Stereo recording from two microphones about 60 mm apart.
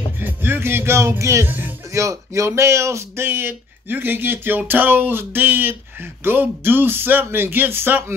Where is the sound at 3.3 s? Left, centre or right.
Right.